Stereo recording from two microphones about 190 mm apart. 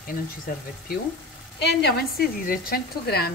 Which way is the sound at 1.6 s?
60° left (ahead or behind).